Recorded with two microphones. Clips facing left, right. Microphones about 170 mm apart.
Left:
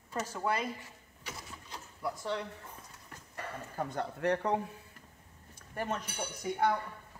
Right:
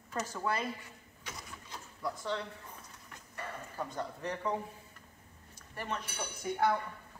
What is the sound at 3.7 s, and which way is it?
Speech, 60° left (ahead or behind).